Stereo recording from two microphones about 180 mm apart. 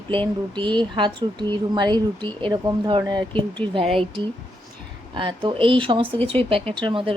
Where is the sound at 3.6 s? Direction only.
10° left (ahead or behind).